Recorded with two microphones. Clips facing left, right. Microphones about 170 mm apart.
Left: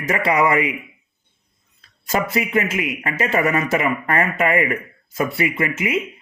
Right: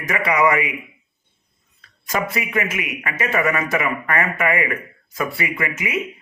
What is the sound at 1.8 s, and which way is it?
Speech, 30° left (ahead or behind).